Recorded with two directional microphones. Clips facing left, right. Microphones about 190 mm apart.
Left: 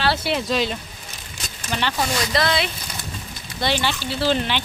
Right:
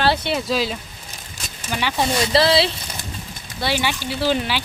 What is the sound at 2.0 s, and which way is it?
Speech, 30° right (ahead or behind).